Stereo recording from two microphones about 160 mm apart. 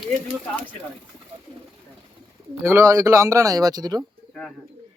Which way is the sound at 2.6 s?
15° right (ahead or behind).